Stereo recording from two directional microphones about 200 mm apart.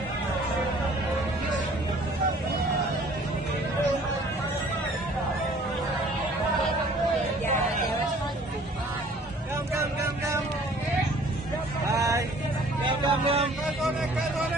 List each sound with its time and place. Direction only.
9.8 s vehicle: 15° right (ahead or behind)
11.9 s vehicle: 15° right (ahead or behind)